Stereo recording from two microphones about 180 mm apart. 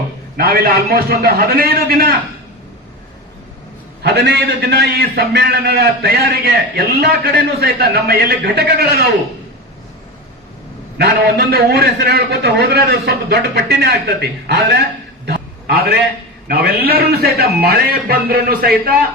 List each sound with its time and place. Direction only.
0.3 s a man's voice: 55° right (ahead or behind)
4.0 s a man's voice: 65° right (ahead or behind)
10.9 s a man's voice: 60° right (ahead or behind)
15.3 s a sound: 60° right (ahead or behind)
16.5 s a man's voice: 60° right (ahead or behind)